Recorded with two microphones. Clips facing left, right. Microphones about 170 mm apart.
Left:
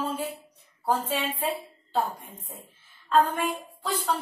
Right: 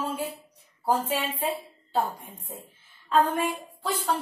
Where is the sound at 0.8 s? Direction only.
10° right (ahead or behind).